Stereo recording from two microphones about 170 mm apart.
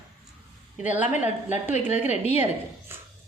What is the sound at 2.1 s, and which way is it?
Speech, 40° left (ahead or behind).